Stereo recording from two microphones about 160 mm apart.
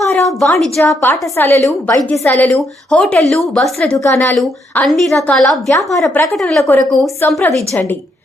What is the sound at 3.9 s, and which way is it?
Speech, 15° left (ahead or behind).